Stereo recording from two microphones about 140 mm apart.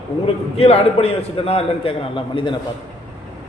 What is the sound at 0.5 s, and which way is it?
A man's voice, 45° left (ahead or behind).